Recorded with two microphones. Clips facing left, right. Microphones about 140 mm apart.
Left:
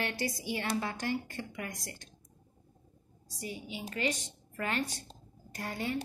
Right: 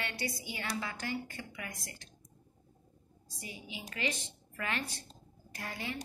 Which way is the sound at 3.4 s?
35° left (ahead or behind).